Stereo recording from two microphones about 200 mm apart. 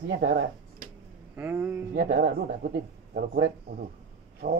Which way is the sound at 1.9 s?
45° right (ahead or behind).